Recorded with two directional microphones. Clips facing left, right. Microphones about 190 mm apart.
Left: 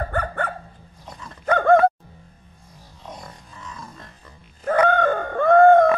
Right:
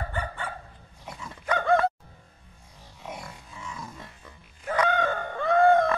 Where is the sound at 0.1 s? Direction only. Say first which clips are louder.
Left 8 dB; 60° left (ahead or behind).